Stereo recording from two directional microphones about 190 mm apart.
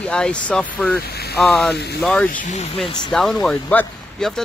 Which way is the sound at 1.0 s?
55° left (ahead or behind).